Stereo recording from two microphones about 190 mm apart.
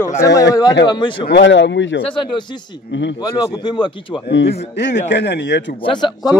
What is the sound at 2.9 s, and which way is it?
Speech, 70° left (ahead or behind).